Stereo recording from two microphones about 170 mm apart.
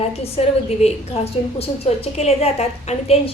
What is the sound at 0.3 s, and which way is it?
A woman's voice, 40° left (ahead or behind).